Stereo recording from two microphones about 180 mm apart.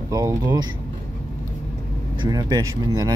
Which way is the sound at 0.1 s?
20° right (ahead or behind).